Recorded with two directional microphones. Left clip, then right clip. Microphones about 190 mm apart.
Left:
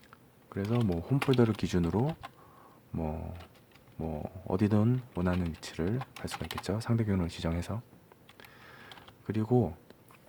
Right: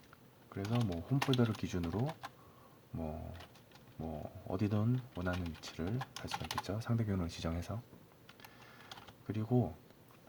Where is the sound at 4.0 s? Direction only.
45° left (ahead or behind); by 7.8 s 30° left (ahead or behind).